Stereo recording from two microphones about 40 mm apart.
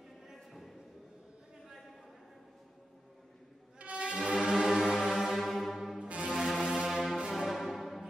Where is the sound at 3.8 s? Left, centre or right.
Right.